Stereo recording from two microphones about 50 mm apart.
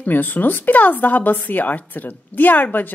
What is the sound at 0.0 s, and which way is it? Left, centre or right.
Speech, left.